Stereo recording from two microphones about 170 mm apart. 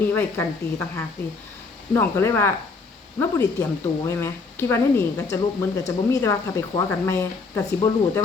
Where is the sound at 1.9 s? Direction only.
15° left (ahead or behind).